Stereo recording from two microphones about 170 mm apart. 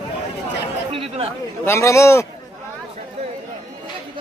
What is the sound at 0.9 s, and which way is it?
Chatter, 35° right (ahead or behind).